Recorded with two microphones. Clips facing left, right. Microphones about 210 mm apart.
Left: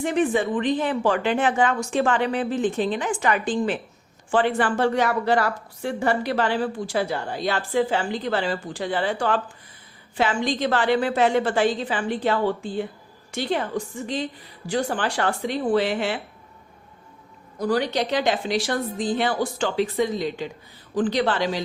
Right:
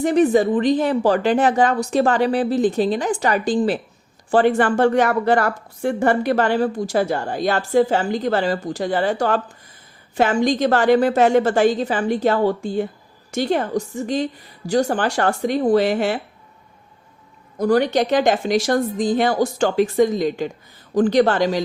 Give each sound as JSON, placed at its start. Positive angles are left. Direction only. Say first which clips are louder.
{"t": 0.0, "sound": "a woman's voice", "louder": "right 6 dB", "side_deg": -40}
{"t": 17.6, "sound": "a woman's voice", "louder": "right 6 dB", "side_deg": -50}